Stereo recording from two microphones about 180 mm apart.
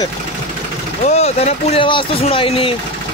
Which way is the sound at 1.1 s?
35° left (ahead or behind).